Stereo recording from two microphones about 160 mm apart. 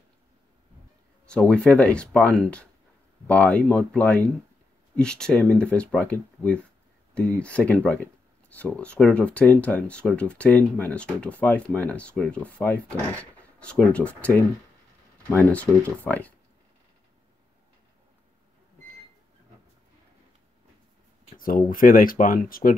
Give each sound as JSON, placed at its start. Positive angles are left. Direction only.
{"t": 1.2, "sound": "speech", "side_deg": 5}
{"t": 21.4, "sound": "speech", "side_deg": 60}